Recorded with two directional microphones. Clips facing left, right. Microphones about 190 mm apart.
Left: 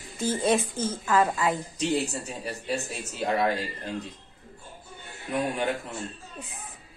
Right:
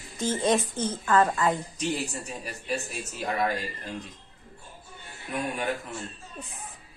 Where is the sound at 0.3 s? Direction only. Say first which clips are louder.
Even; 10° left (ahead or behind).